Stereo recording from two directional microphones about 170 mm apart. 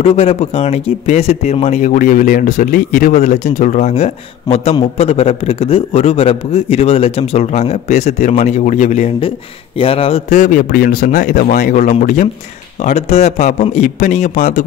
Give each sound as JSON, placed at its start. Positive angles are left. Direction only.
{"t": 0.0, "sound": "speech", "side_deg": 35}
{"t": 9.8, "sound": "speech", "side_deg": 35}
{"t": 10.3, "sound": "a man's voice", "side_deg": 50}